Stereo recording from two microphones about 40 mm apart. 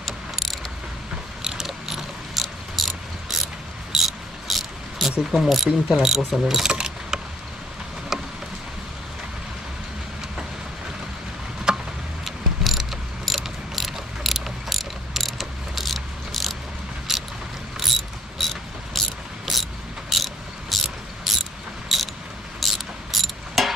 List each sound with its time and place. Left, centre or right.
0.0 s mechanisms: centre
1.4 s mechanisms: centre
2.4 s cricket: centre
5.3 s speech: centre
6.7 s a sound: centre
11.7 s a sound: centre
12.3 s mechanisms: centre
17.1 s vehicle: centre
17.8 s cricket: centre
19.5 s a sound: centre
20.1 s cricket: centre
20.8 s mechanisms: centre
22.6 s cricket: centre
23.1 s a sound: centre